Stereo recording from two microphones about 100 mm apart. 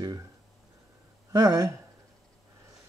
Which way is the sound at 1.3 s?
40° right (ahead or behind).